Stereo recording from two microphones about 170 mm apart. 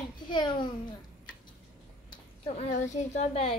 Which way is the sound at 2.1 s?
40° left (ahead or behind).